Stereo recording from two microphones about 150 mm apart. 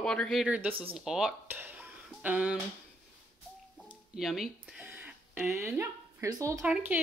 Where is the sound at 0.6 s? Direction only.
10° right (ahead or behind).